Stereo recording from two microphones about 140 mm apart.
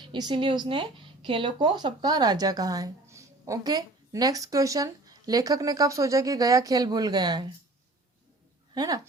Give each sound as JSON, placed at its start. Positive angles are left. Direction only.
{"t": 0.1, "sound": "speech", "side_deg": -35}
{"t": 8.7, "sound": "speech", "side_deg": -30}